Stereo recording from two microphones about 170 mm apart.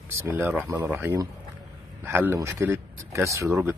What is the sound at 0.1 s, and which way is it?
Speech, 10° right (ahead or behind).